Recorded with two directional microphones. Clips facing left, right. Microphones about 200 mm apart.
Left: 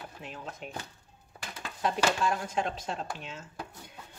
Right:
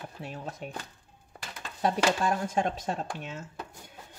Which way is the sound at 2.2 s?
45° right (ahead or behind).